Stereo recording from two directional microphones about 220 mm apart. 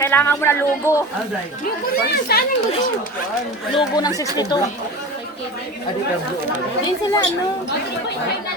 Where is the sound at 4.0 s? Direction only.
15° left (ahead or behind).